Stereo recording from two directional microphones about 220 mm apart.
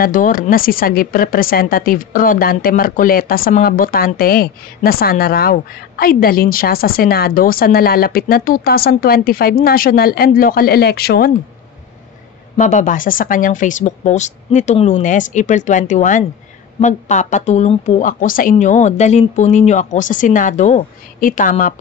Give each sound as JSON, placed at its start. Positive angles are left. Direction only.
{"t": 0.0, "sound": "speech", "side_deg": 40}
{"t": 12.5, "sound": "speech", "side_deg": 35}